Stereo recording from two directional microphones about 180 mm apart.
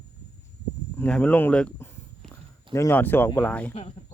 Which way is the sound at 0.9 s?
5° left (ahead or behind).